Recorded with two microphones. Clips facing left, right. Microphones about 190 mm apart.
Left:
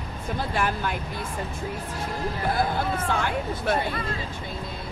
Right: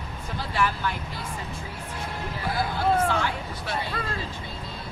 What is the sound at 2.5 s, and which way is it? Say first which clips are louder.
Speech: right 2 dB; 50° left (ahead or behind).